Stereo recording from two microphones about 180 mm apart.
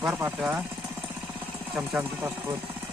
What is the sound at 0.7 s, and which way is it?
Jackhammer, 10° right (ahead or behind).